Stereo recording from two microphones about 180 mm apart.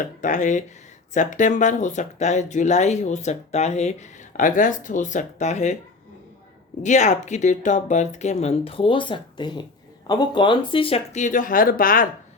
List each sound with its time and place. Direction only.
0.0 s speech: 45° left (ahead or behind)
6.8 s speech: 40° left (ahead or behind)